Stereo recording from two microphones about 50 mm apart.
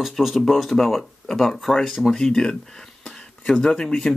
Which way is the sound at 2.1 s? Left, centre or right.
Centre.